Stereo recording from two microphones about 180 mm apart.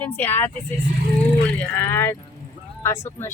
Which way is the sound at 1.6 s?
10° left (ahead or behind).